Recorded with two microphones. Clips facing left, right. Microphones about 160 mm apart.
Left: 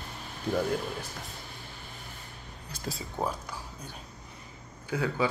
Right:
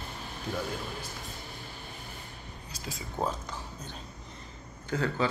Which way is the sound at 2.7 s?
45° left (ahead or behind).